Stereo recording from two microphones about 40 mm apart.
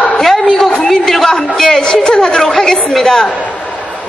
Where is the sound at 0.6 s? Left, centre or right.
Centre.